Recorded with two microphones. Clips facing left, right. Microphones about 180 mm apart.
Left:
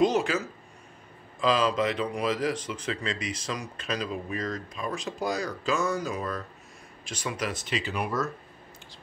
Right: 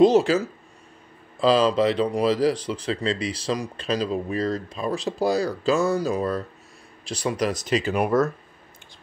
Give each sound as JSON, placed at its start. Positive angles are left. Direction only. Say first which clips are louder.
{"t": 0.0, "sound": "speech", "louder": "right 8 dB", "side_deg": -35}
{"t": 1.4, "sound": "speech", "louder": "right 6 dB", "side_deg": -30}